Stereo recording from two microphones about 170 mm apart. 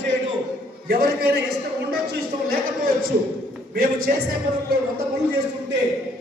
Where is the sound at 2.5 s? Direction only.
60° right (ahead or behind).